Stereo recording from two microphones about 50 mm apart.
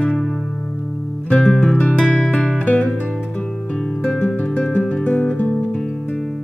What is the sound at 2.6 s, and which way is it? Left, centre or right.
Music, left.